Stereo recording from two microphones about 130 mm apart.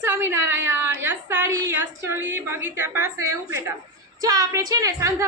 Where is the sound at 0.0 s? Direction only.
20° right (ahead or behind).